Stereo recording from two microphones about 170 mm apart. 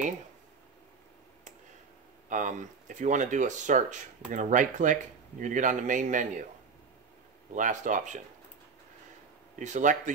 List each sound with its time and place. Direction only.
2.2 s speech: 50° right (ahead or behind)
7.5 s speech: 50° right (ahead or behind)
9.6 s speech: 45° right (ahead or behind)